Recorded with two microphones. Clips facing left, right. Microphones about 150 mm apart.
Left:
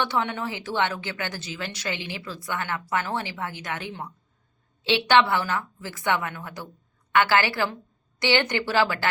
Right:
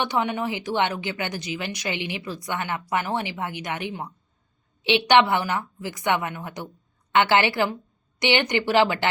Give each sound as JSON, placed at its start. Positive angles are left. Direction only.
{"t": 0.0, "sound": "a woman's voice", "side_deg": -15}